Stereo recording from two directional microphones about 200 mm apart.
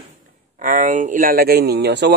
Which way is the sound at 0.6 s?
40° right (ahead or behind).